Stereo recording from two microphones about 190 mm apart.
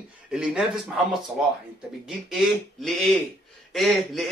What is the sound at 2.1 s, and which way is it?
Speech, centre (ahead or behind).